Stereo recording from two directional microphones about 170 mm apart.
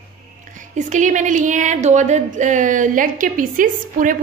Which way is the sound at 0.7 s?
45° right (ahead or behind).